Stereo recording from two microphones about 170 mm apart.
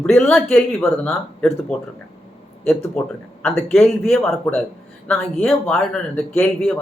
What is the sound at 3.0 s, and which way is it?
Speech, centre (ahead or behind).